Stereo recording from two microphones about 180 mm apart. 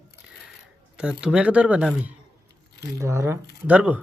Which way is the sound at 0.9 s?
5° right (ahead or behind).